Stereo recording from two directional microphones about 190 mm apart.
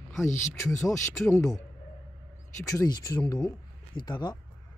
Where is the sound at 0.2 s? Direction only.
15° left (ahead or behind).